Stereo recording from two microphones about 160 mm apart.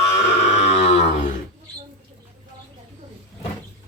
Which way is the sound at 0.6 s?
45° left (ahead or behind).